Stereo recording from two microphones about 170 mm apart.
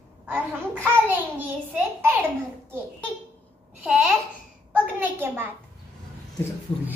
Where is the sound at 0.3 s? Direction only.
10° right (ahead or behind).